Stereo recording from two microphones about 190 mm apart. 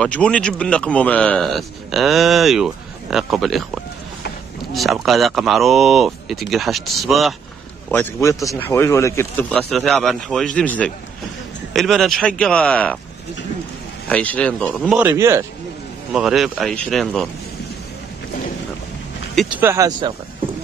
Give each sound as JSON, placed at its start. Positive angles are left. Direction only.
{"t": 0.0, "sound": "a man's voice", "side_deg": 5}
{"t": 7.9, "sound": "a man's voice", "side_deg": 15}
{"t": 14.0, "sound": "speech", "side_deg": 10}
{"t": 15.0, "sound": "speech", "side_deg": -15}
{"t": 16.1, "sound": "a man's voice", "side_deg": -5}
{"t": 19.6, "sound": "speech", "side_deg": -15}